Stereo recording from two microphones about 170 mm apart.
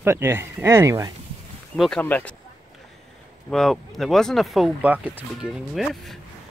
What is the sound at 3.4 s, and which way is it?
Speech, centre (ahead or behind).